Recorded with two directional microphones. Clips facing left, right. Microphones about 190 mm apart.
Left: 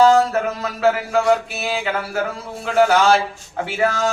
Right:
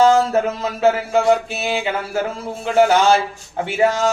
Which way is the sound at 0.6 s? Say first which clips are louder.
Right 2 dB; 25° right (ahead or behind).